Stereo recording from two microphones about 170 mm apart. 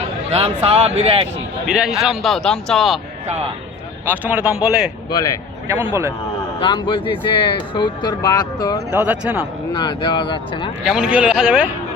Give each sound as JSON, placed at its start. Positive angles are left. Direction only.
{"t": 0.3, "sound": "speech", "side_deg": -35}
{"t": 1.6, "sound": "a man's voice", "side_deg": -5}
{"t": 4.0, "sound": "speech", "side_deg": -10}
{"t": 5.1, "sound": "speech", "side_deg": 20}
{"t": 5.6, "sound": "speech", "side_deg": -15}
{"t": 6.6, "sound": "speech", "side_deg": 30}
{"t": 8.9, "sound": "speech", "side_deg": -10}
{"t": 9.7, "sound": "speech", "side_deg": 25}
{"t": 10.8, "sound": "a man's voice", "side_deg": -5}